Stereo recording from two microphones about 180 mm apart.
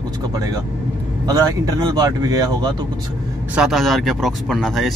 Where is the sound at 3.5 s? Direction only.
Centre (ahead or behind).